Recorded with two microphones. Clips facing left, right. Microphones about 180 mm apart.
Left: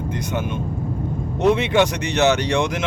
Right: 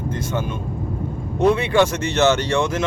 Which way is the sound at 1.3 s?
20° left (ahead or behind).